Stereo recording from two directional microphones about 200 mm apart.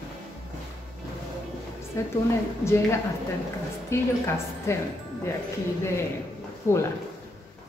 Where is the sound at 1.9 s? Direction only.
15° left (ahead or behind).